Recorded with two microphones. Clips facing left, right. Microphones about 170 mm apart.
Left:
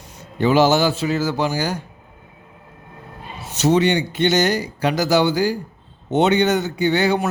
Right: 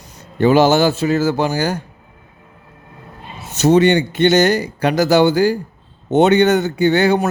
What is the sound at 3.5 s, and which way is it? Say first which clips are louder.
A man's voice: right 5 dB; 50° right (ahead or behind).